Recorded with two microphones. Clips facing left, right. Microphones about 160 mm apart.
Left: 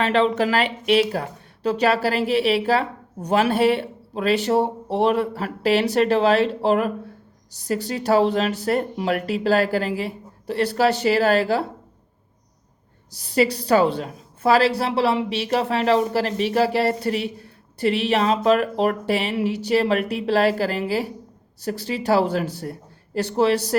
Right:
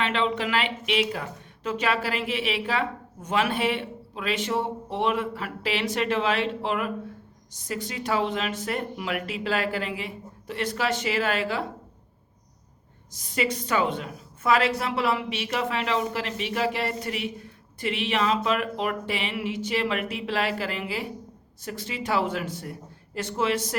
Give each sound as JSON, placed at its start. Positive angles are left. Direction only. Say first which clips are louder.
{"t": 0.0, "sound": "a woman's voice", "louder": "left 7 dB", "side_deg": 40}
{"t": 13.1, "sound": "a woman's voice", "louder": "left 8 dB", "side_deg": 35}